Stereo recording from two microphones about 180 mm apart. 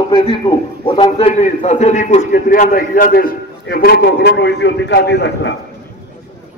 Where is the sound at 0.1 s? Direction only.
30° left (ahead or behind).